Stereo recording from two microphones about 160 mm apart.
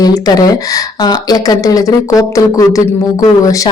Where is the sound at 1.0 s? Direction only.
25° left (ahead or behind).